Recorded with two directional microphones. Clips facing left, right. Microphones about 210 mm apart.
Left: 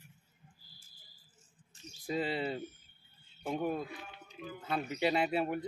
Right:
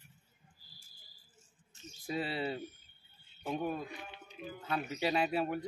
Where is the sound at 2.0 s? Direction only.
Centre (ahead or behind).